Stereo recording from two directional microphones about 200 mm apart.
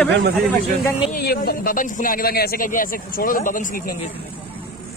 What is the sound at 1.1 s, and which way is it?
Speech, 50° left (ahead or behind).